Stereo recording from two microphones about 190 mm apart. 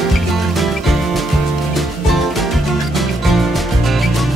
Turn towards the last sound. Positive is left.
turn(degrees=0)  # may be behind; listen again after turning